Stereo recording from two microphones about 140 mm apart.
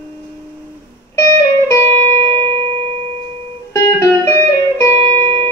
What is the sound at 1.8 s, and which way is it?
Music, 45° right (ahead or behind).